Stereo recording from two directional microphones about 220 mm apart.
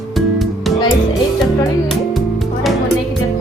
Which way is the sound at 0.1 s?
Centre (ahead or behind).